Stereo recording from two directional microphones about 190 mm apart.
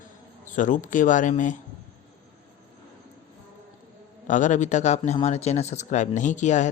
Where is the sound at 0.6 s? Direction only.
45° left (ahead or behind).